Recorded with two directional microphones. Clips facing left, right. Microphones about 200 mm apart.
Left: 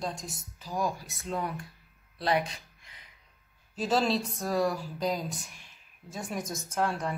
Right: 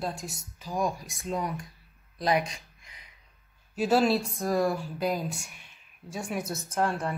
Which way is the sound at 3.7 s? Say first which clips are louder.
Right 4 dB; 10° right (ahead or behind).